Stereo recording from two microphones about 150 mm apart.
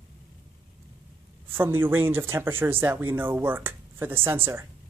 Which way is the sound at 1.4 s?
15° right (ahead or behind).